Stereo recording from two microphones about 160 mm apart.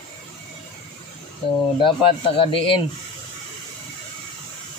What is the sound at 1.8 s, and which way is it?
Speech, 30° left (ahead or behind).